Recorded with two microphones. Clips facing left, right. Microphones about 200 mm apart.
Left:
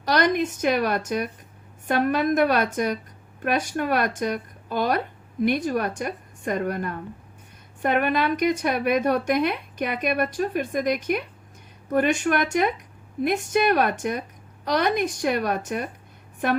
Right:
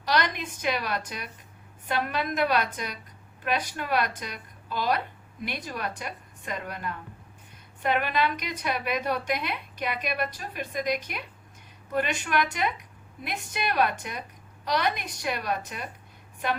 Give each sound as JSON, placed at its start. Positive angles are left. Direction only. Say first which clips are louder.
{"t": 0.0, "sound": "speech", "louder": "left 7 dB", "side_deg": 45}